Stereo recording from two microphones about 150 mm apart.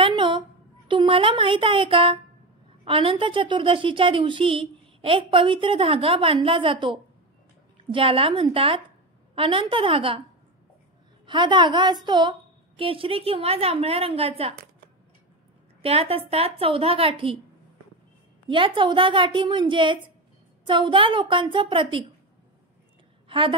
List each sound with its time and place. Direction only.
0.0 s a sound: 35° right (ahead or behind)
0.8 s a woman's voice: 35° right (ahead or behind)
11.2 s a woman's voice: 30° right (ahead or behind)
15.8 s a woman's voice: 40° right (ahead or behind)
18.5 s a woman's voice: 35° right (ahead or behind)
23.2 s a sound: 35° right (ahead or behind)